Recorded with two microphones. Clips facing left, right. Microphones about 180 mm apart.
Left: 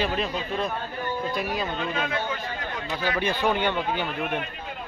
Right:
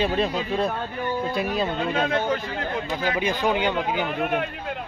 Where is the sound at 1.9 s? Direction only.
45° right (ahead or behind).